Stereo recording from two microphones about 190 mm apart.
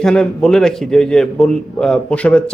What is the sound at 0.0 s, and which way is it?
Speech, 5° left (ahead or behind).